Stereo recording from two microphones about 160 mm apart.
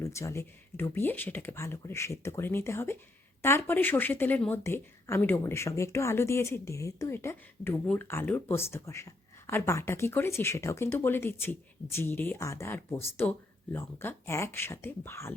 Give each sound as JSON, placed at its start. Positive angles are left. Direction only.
{"t": 0.0, "sound": "speech", "side_deg": 15}